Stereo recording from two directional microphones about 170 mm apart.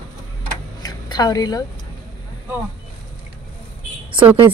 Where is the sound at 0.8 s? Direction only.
25° left (ahead or behind).